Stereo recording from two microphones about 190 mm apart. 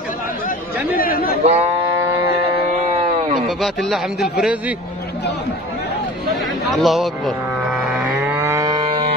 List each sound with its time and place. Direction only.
0.9 s speech: 50° left (ahead or behind)
1.4 s speech: 35° right (ahead or behind)
2.9 s a sound: 35° right (ahead or behind)
3.3 s a man's voice: centre (ahead or behind)
6.7 s cattle: centre (ahead or behind); by 9.0 s 25° right (ahead or behind)